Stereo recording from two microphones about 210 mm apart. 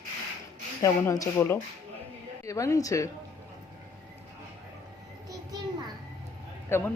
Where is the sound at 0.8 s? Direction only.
15° left (ahead or behind).